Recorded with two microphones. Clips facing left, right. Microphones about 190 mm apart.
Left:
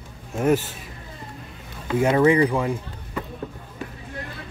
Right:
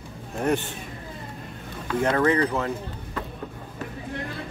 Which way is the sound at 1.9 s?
10° left (ahead or behind).